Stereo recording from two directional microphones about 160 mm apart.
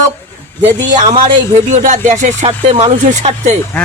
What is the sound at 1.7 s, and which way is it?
Music, 50° right (ahead or behind).